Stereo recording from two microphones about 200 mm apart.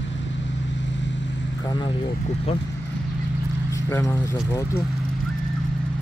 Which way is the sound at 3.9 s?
15° left (ahead or behind).